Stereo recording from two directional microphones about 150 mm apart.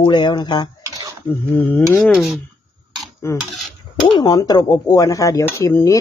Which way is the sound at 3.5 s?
Centre (ahead or behind).